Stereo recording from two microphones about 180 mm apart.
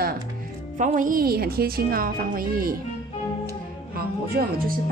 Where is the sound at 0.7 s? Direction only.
45° right (ahead or behind).